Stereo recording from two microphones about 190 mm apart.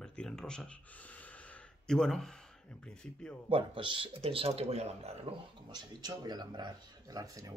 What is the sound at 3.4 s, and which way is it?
Speech, 30° right (ahead or behind).